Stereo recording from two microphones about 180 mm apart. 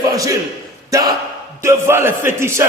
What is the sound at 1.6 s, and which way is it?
Speech, 15° right (ahead or behind).